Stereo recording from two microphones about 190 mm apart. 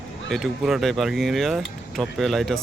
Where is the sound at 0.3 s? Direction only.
Centre (ahead or behind).